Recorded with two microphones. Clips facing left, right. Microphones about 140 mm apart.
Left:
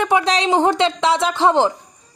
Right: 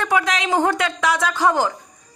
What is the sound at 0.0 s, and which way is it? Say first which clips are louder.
A woman's voice: left 4 dB; 25° left (ahead or behind).